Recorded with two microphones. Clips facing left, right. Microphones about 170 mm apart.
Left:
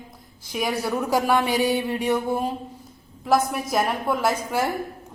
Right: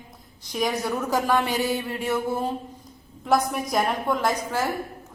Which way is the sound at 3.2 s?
Centre (ahead or behind).